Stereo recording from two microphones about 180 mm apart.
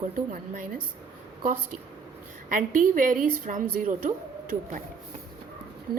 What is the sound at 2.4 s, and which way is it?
A woman's voice, 50° right (ahead or behind).